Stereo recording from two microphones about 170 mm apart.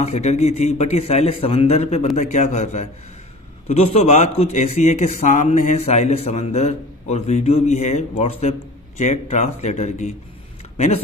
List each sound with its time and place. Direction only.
0.0 s a man's voice: 40° left (ahead or behind)